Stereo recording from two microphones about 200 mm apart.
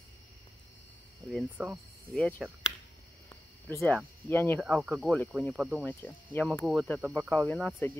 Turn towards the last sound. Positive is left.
turn(degrees=5)  # may be behind; listen again after turning